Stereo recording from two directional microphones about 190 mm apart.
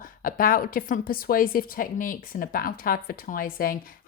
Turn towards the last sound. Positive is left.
turn(degrees=50)  # may be behind; listen again after turning